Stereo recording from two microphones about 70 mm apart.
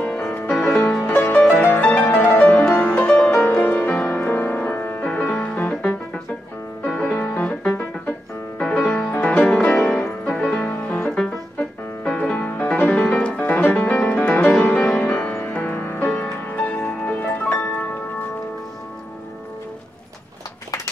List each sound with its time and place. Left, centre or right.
0.5 s music: left
3.3 s music: left
5.0 s music: centre
7.1 s music: left